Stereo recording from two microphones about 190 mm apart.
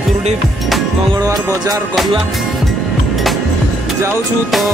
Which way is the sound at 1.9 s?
Centre (ahead or behind).